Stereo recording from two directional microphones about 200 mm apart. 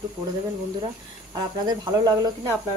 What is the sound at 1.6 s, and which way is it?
Speech, 20° right (ahead or behind).